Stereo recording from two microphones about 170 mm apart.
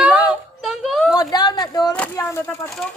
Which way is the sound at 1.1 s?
25° left (ahead or behind).